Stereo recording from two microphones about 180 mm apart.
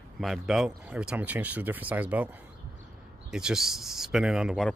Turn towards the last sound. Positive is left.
turn(degrees=0)  # may be behind; listen again after turning